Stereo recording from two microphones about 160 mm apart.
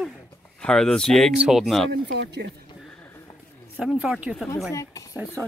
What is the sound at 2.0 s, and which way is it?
Speech, 90° right.